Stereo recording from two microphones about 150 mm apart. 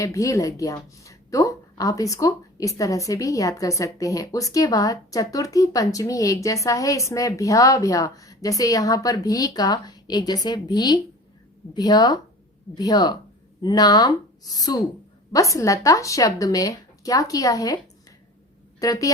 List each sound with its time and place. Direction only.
0.0 s a woman's voice: 20° left (ahead or behind)
18.8 s a woman's voice: 25° left (ahead or behind)